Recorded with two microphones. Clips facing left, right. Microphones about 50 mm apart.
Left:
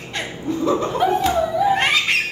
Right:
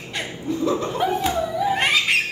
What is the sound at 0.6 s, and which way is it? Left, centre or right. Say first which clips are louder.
Cat: left 3 dB; left.